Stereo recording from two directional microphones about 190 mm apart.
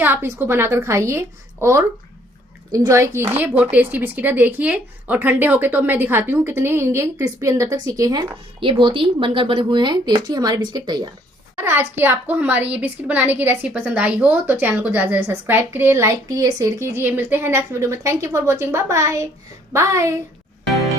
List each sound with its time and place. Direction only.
0.0 s speech: 10° right (ahead or behind)
2.7 s speech: 15° right (ahead or behind)